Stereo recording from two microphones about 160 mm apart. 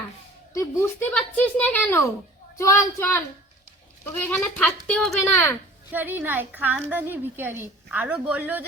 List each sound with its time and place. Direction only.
0.5 s a woman's voice: 20° left (ahead or behind)
5.2 s speech: 15° left (ahead or behind)
5.9 s a woman's voice: 10° right (ahead or behind)